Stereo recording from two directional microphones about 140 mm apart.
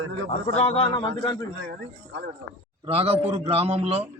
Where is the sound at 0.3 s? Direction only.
45° left (ahead or behind).